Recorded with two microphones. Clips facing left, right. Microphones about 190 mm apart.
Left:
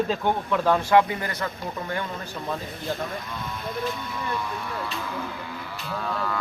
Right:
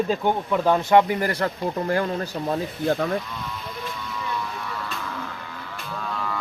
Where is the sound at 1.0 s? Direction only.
30° right (ahead or behind).